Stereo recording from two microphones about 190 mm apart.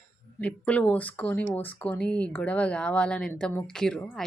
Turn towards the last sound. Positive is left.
turn(degrees=5)  # may be behind; listen again after turning